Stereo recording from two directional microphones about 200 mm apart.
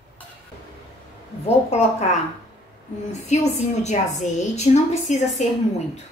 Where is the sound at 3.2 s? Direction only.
35° left (ahead or behind).